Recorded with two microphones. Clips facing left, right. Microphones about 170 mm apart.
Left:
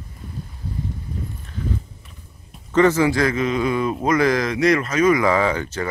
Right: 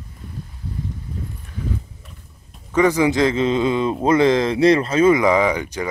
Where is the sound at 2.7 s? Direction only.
15° right (ahead or behind).